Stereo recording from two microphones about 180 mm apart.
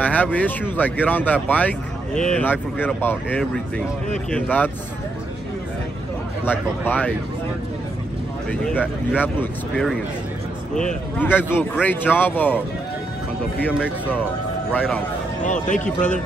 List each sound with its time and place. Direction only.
0.0 s speech: 10° left (ahead or behind)
6.4 s speech: 10° left (ahead or behind)
8.5 s speech: 10° left (ahead or behind)
13.7 s speech: 10° right (ahead or behind)
14.7 s speech: 10° left (ahead or behind)
15.4 s speech: 45° left (ahead or behind)